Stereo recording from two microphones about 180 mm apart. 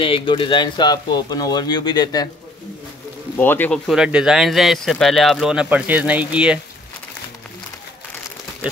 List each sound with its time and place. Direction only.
0.0 s speech: 30° left (ahead or behind)
3.3 s speech: 10° left (ahead or behind); by 6.6 s 5° right (ahead or behind)